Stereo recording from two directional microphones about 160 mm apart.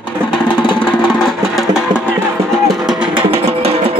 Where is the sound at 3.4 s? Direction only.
40° right (ahead or behind).